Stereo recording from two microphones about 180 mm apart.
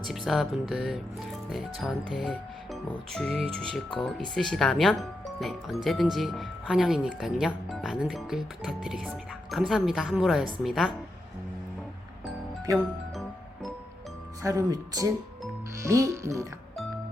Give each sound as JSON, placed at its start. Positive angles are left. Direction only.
{"t": 0.1, "sound": "speech", "side_deg": 0}
{"t": 14.4, "sound": "speech", "side_deg": -20}